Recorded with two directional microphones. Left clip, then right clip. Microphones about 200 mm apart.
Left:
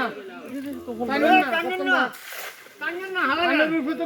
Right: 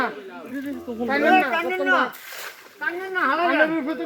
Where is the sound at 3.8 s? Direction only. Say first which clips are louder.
Even; 45° left (ahead or behind).